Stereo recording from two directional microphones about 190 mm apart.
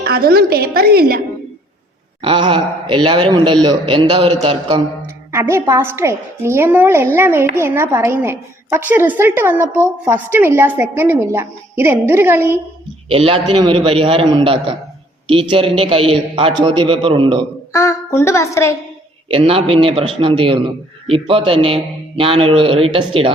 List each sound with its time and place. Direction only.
0.0 s a woman's voice: 50° right (ahead or behind)
2.2 s a man's voice: 25° right (ahead or behind)
5.3 s a woman's voice: 15° right (ahead or behind)
13.1 s a man's voice: 30° right (ahead or behind)
17.7 s a sound: 15° left (ahead or behind)
19.3 s a man's voice: 30° right (ahead or behind)